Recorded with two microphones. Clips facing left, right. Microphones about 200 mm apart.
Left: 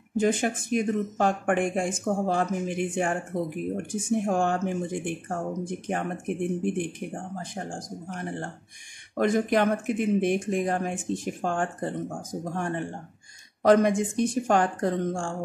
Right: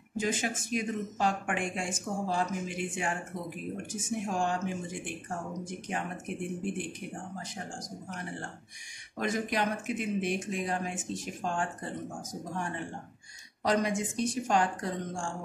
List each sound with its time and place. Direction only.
0.2 s speech: 55° left (ahead or behind)